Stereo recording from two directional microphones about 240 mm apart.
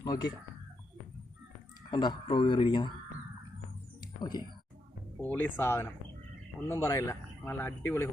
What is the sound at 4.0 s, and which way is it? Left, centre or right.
Music, centre.